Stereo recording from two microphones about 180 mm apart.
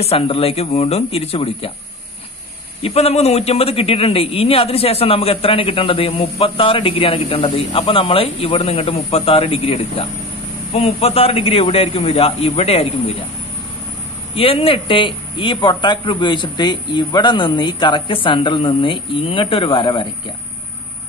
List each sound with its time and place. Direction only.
0.0 s a man's voice: 35° left (ahead or behind)
2.8 s a man's voice: 35° left (ahead or behind)
14.3 s a man's voice: 30° left (ahead or behind)